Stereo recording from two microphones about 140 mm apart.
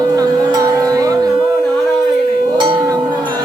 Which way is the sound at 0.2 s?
25° right (ahead or behind).